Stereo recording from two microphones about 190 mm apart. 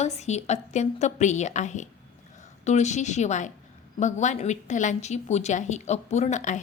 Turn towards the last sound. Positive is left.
turn(degrees=40)  # may be behind; listen again after turning